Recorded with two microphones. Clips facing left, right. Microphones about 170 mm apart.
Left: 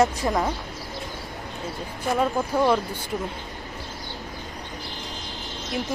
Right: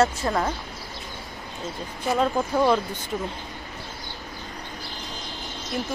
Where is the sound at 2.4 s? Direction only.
10° left (ahead or behind).